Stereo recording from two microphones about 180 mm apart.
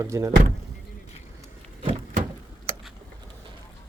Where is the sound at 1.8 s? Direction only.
30° right (ahead or behind).